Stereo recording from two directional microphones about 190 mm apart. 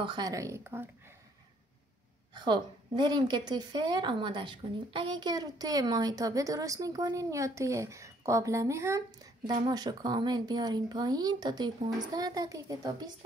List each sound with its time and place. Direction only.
0.0 s speech: 20° right (ahead or behind)
2.3 s a woman's voice: 25° right (ahead or behind)